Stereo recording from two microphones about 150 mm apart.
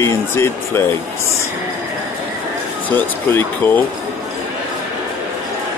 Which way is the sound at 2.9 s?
10° left (ahead or behind).